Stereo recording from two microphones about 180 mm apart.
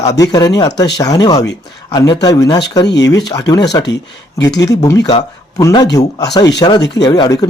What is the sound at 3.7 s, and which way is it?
Speech, 20° left (ahead or behind).